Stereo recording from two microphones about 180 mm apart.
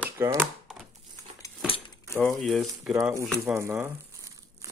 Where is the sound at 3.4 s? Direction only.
15° right (ahead or behind).